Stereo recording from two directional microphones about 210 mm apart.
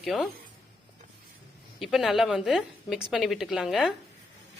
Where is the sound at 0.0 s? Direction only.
Centre (ahead or behind).